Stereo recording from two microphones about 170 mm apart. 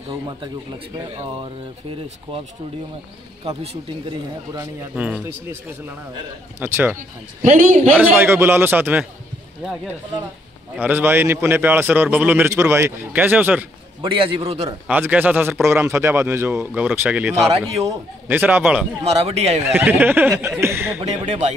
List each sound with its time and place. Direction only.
0.9 s speech: 25° right (ahead or behind)
4.6 s a man's voice: 5° right (ahead or behind)
7.0 s a man's voice: 40° right (ahead or behind)
8.0 s a man's voice: 15° right (ahead or behind)
10.8 s a man's voice: 10° right (ahead or behind)
14.0 s a man's voice: 30° right (ahead or behind)
14.9 s a man's voice: 10° right (ahead or behind)
19.0 s a man's voice: 40° right (ahead or behind)
19.6 s a man's voice: 10° right (ahead or behind)
21.0 s a man's voice: 40° right (ahead or behind)